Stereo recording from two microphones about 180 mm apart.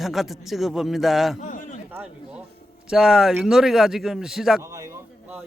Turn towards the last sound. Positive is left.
turn(degrees=0)  # may be behind; listen again after turning